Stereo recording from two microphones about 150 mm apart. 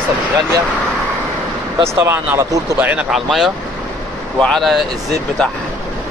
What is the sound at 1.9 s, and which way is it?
Speech, 15° right (ahead or behind).